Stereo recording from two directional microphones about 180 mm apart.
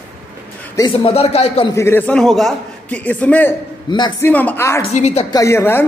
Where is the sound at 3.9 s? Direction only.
25° left (ahead or behind).